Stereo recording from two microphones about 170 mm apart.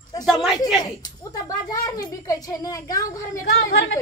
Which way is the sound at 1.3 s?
20° left (ahead or behind).